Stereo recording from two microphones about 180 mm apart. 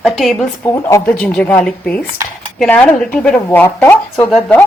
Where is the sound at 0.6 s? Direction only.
15° left (ahead or behind).